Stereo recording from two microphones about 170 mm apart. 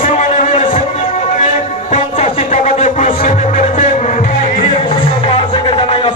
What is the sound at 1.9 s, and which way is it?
Music, 45° left (ahead or behind).